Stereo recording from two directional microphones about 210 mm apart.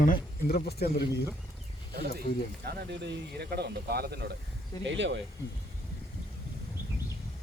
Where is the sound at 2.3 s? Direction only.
45° left (ahead or behind).